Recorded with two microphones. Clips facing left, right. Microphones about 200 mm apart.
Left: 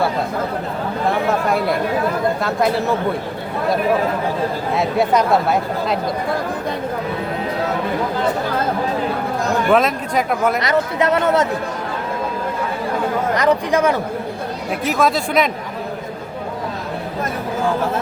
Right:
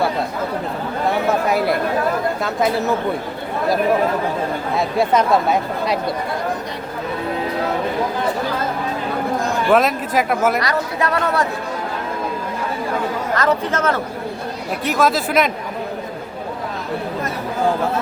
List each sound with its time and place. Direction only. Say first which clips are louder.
1.3 s speech: even; 5° right (ahead or behind)
4.8 s speech: left 1 dB; centre (ahead or behind)
9.6 s speech: right 1 dB; centre (ahead or behind)
10.6 s speech: left 3 dB; 20° left (ahead or behind)
13.3 s speech: left 2 dB; 15° left (ahead or behind)
14.8 s speech: even; centre (ahead or behind)